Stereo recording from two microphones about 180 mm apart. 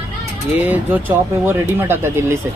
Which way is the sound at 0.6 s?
10° right (ahead or behind).